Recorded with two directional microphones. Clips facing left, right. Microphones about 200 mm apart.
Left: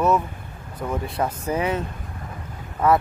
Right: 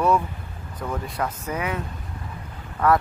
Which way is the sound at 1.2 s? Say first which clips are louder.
Left 5 dB; 30° left (ahead or behind).